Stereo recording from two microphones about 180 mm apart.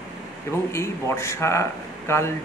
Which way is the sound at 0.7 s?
15° left (ahead or behind).